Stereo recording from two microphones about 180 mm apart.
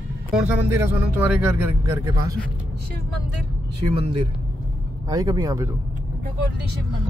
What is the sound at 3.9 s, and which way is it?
Speech, 30° right (ahead or behind).